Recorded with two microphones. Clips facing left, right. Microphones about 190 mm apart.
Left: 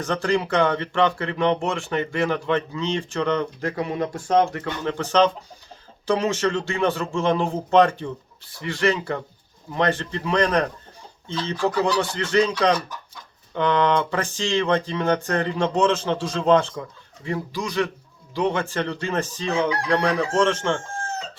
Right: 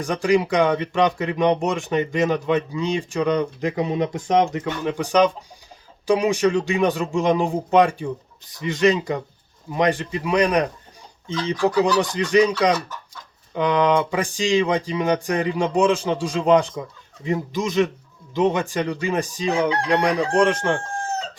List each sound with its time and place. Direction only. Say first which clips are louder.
0.0 s speech: right 3 dB; 10° right (ahead or behind)